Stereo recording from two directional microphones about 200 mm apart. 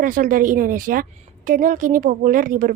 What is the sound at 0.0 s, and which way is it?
A woman's voice, 45° right (ahead or behind).